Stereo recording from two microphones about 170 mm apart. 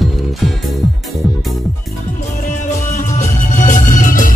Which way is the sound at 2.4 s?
45° left (ahead or behind).